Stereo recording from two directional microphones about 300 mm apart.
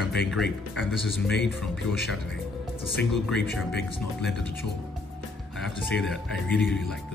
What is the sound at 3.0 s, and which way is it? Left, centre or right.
Speech, centre.